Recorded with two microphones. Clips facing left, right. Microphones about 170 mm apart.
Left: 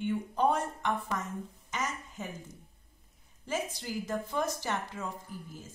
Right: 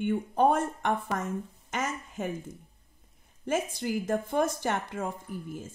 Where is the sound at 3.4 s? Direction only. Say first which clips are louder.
Right 6 dB; 50° right (ahead or behind).